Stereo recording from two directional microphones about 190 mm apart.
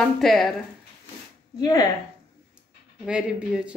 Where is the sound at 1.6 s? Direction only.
20° left (ahead or behind).